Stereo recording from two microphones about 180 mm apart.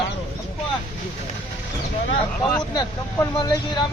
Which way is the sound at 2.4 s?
15° left (ahead or behind).